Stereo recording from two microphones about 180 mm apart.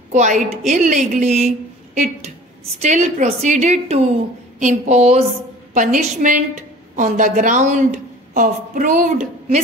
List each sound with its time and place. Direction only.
0.1 s a woman's voice: 40° right (ahead or behind)
2.8 s a woman's voice: 40° right (ahead or behind)